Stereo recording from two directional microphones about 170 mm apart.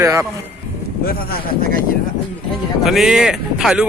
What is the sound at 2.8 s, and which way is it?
Speech, centre (ahead or behind).